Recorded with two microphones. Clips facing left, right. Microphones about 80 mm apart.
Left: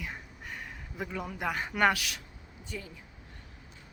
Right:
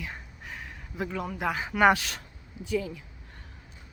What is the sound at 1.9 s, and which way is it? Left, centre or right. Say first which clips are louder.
Speech: right 7 dB; right.